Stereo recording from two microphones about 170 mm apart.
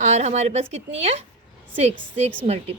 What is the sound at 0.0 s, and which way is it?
A woman's voice, 40° right (ahead or behind).